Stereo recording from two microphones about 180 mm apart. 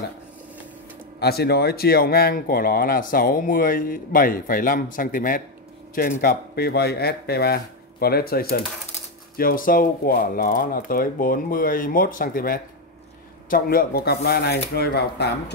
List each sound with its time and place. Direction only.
1.2 s speech: 65° left (ahead or behind)
6.2 s speech: 60° left (ahead or behind)